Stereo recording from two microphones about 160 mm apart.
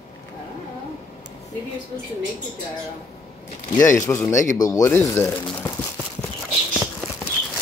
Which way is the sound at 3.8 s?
20° left (ahead or behind).